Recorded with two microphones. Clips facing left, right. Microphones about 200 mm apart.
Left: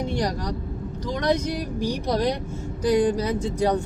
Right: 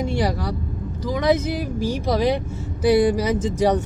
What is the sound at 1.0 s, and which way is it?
Speech, 5° right (ahead or behind).